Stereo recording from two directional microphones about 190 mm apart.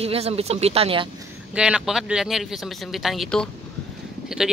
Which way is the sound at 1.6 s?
5° right (ahead or behind).